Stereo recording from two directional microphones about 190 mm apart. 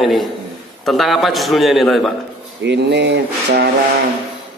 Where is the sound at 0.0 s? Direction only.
Centre (ahead or behind).